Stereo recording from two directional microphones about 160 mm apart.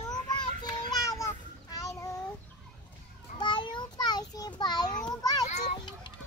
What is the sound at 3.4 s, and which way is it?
Child singing, 30° left (ahead or behind).